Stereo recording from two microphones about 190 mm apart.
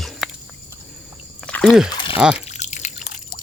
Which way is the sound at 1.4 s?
5° left (ahead or behind).